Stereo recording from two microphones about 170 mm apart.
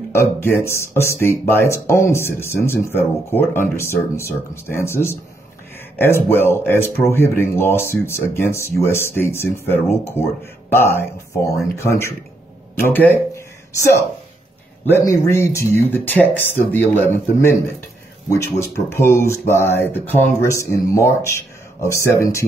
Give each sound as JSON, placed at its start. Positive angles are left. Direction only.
{"t": 0.1, "sound": "speech", "side_deg": 15}